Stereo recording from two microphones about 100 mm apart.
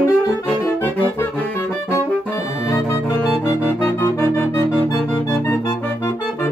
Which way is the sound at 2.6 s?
25° left (ahead or behind).